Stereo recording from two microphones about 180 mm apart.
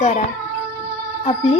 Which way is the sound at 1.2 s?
35° left (ahead or behind).